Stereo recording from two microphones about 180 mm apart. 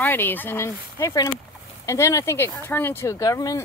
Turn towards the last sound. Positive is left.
turn(degrees=20)  # may be behind; listen again after turning